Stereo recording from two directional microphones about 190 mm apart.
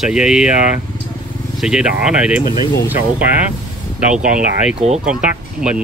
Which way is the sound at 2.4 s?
25° right (ahead or behind).